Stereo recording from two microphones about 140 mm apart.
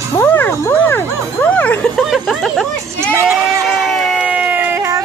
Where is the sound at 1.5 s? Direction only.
10° left (ahead or behind).